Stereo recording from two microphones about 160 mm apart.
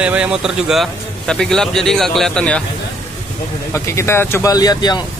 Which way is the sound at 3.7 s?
20° left (ahead or behind).